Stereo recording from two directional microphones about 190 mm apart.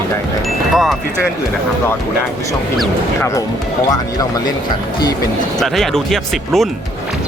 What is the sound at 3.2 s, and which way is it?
Speech, 15° left (ahead or behind).